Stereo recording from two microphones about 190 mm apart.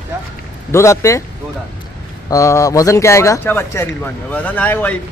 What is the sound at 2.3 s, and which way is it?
A man's voice, 15° left (ahead or behind).